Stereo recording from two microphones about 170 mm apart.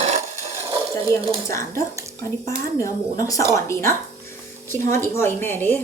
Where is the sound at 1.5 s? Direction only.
15° left (ahead or behind).